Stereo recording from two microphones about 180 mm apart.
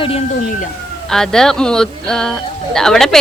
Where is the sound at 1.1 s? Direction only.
5° left (ahead or behind).